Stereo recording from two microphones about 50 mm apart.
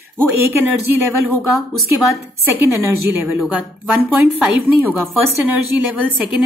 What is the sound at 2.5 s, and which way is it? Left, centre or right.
Speech, right.